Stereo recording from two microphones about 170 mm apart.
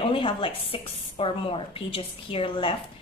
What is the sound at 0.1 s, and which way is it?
A woman's voice, 30° left (ahead or behind).